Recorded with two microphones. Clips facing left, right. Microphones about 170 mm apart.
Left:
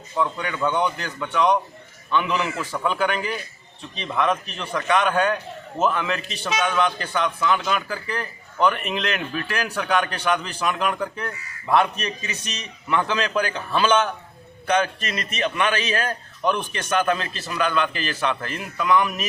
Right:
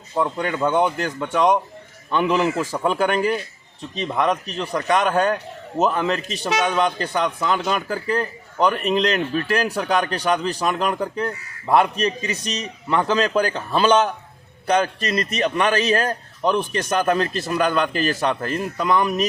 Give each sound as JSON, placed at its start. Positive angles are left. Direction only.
{"t": 0.2, "sound": "a man's voice", "side_deg": -45}